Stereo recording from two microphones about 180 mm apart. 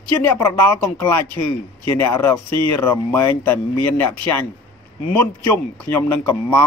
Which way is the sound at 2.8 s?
15° left (ahead or behind).